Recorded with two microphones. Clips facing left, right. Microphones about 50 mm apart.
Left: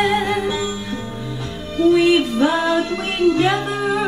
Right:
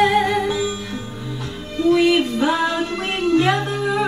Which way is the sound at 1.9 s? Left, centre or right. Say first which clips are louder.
Even; centre.